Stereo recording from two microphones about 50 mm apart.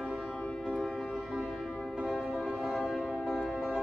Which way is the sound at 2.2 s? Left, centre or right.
Centre.